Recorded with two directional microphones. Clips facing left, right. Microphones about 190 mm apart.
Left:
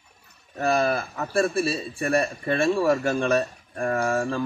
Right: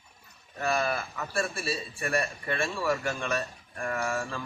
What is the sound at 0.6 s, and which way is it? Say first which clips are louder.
Speech: left 6 dB; 35° left (ahead or behind).